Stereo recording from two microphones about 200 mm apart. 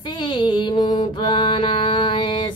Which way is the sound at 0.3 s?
25° left (ahead or behind).